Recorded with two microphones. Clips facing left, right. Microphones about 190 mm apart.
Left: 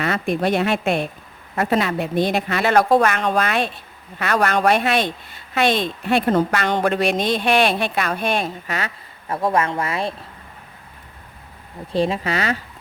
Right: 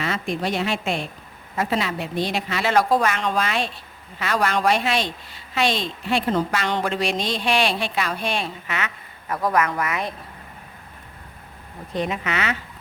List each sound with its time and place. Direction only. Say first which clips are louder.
0.0 s speech: left 5 dB; 55° left (ahead or behind); by 8.9 s 40° left (ahead or behind)
9.3 s speech: left 2 dB; 30° left (ahead or behind)
11.9 s speech: left 5 dB; 30° left (ahead or behind)